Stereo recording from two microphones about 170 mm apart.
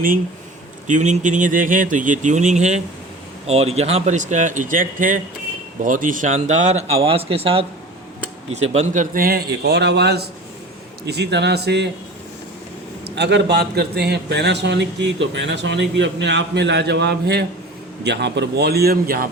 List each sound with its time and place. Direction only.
0.9 s a man's voice: 45° right (ahead or behind); by 11.9 s 75° right (ahead or behind)
13.1 s a man's voice: 85° right
18.0 s a man's voice: 90° right; by 19.3 s 60° right (ahead or behind)